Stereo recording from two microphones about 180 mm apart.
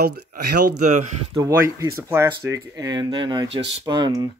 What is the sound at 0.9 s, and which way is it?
Speech, 45° right (ahead or behind).